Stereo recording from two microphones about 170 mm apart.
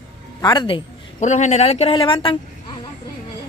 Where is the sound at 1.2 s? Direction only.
45° left (ahead or behind); by 2.3 s 30° left (ahead or behind).